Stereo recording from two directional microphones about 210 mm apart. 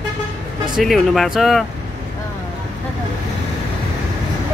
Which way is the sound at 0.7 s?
Centre (ahead or behind).